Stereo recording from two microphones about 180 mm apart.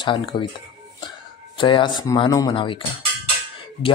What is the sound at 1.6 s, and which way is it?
Speech, 25° left (ahead or behind).